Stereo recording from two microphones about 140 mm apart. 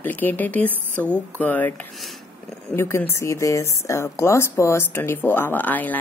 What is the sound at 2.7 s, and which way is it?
A woman's voice, 20° left (ahead or behind).